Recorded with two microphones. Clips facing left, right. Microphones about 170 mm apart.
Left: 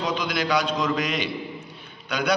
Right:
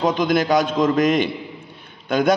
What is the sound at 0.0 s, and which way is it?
A man's voice, 50° right (ahead or behind).